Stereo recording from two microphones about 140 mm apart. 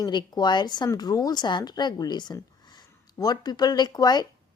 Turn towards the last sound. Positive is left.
turn(degrees=30)  # may be behind; listen again after turning